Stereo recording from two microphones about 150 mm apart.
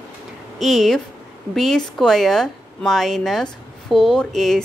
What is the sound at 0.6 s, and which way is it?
A woman's voice, centre (ahead or behind).